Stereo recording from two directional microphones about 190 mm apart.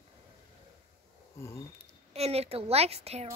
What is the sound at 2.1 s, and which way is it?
Speech, 35° right (ahead or behind).